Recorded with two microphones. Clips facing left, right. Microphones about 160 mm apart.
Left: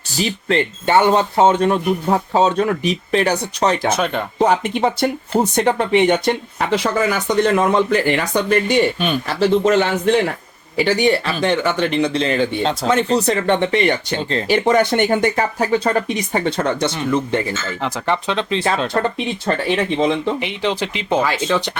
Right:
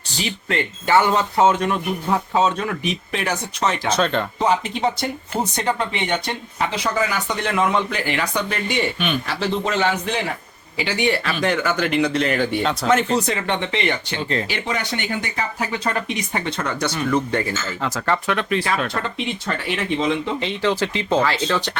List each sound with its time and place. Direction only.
0.2 s speech: 35° left (ahead or behind)
3.9 s speech: 10° left (ahead or behind)
4.4 s speech: 55° left (ahead or behind)
10.8 s speech: 35° left (ahead or behind)
14.7 s speech: 50° left (ahead or behind)
20.4 s speech: 15° left (ahead or behind)